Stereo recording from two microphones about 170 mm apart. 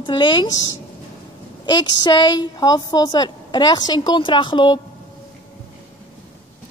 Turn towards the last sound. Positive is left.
turn(degrees=25)  # may be behind; listen again after turning